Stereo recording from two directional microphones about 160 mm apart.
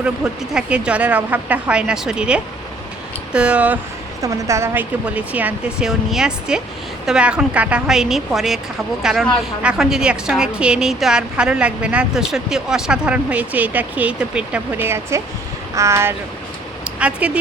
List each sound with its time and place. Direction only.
0.5 s speech: 5° right (ahead or behind)
4.2 s a woman's voice: 20° right (ahead or behind)
16.8 s a sound: 5° right (ahead or behind)